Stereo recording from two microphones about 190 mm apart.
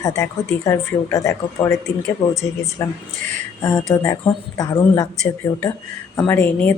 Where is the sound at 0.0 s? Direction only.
15° left (ahead or behind).